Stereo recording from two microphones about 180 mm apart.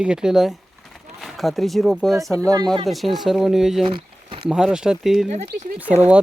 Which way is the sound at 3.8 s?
30° right (ahead or behind).